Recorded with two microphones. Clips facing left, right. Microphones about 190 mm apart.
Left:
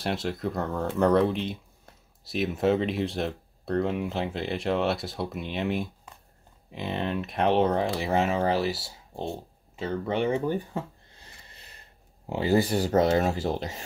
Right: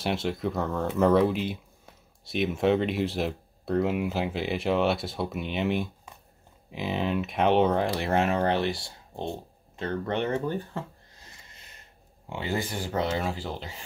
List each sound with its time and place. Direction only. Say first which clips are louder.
0.0 s speech: right 1 dB; centre (ahead or behind)
11.4 s a sound: left 1 dB; 35° left (ahead or behind)
12.3 s speech: left 7 dB; 35° left (ahead or behind)